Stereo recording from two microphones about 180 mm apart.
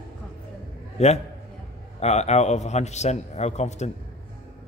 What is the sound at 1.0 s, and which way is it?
A man's voice, 35° left (ahead or behind).